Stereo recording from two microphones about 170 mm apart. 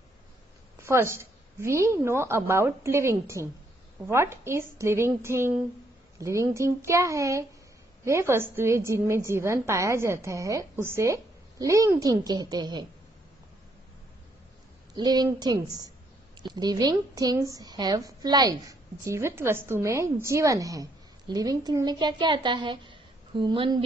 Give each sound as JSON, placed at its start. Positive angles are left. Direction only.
{"t": 0.7, "sound": "a woman's voice", "side_deg": -15}
{"t": 15.0, "sound": "a woman's voice", "side_deg": -25}